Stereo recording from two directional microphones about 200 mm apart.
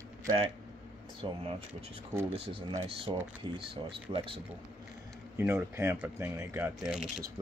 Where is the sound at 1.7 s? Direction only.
10° right (ahead or behind).